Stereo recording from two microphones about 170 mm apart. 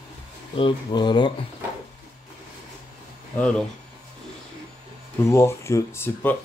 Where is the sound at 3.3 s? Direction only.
5° left (ahead or behind).